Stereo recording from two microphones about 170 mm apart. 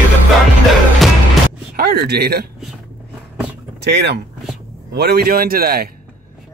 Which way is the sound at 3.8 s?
80° right.